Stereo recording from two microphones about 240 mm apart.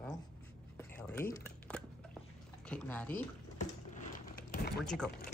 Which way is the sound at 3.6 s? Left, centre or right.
Left.